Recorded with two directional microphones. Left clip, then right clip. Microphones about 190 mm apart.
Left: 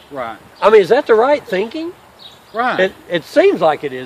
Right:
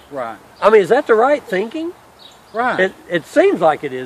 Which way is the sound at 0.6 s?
15° left (ahead or behind).